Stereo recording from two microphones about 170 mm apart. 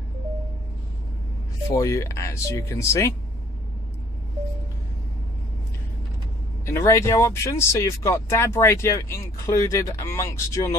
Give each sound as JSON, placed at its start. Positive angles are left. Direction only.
{"t": 1.7, "sound": "speech", "side_deg": 20}
{"t": 6.6, "sound": "speech", "side_deg": 15}